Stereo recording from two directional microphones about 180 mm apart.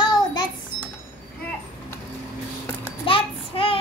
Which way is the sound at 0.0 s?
25° left (ahead or behind).